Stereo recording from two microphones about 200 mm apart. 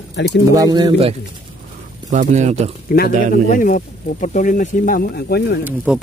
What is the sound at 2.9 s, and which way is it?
Speech, 45° left (ahead or behind).